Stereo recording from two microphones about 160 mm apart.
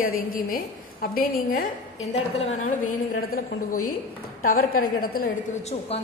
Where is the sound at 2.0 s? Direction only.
45° left (ahead or behind).